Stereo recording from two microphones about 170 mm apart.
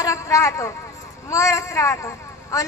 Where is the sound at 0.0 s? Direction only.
20° left (ahead or behind).